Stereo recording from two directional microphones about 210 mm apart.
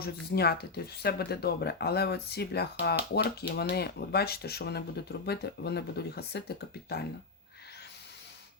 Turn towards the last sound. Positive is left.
turn(degrees=50)  # may be behind; listen again after turning